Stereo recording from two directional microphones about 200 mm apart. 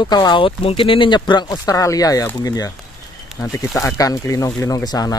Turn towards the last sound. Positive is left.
turn(degrees=20)  # may be behind; listen again after turning